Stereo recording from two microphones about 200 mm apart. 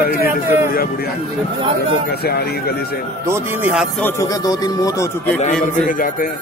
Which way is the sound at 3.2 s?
10° right (ahead or behind).